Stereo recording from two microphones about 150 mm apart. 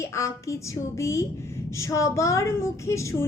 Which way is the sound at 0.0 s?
20° left (ahead or behind).